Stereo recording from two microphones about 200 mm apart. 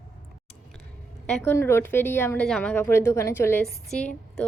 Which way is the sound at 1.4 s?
10° left (ahead or behind).